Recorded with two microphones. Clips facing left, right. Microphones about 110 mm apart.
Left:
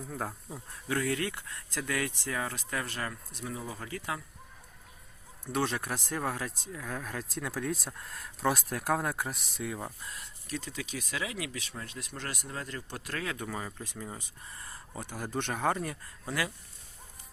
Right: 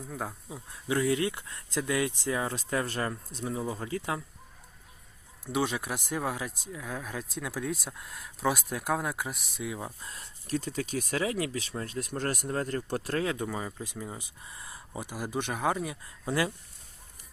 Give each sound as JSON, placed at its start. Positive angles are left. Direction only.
{"t": 0.1, "sound": "speech", "side_deg": 0}
{"t": 0.9, "sound": "speech", "side_deg": -20}
{"t": 5.5, "sound": "speech", "side_deg": -5}
{"t": 10.0, "sound": "speech", "side_deg": -30}
{"t": 13.1, "sound": "speech", "side_deg": -30}
{"t": 13.6, "sound": "speech", "side_deg": -10}
{"t": 16.2, "sound": "speech", "side_deg": -25}